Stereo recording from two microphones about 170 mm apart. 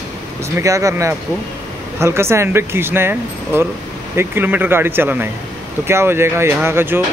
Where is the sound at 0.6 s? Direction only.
20° right (ahead or behind).